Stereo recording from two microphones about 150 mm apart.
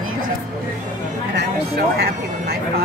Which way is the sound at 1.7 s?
90° right.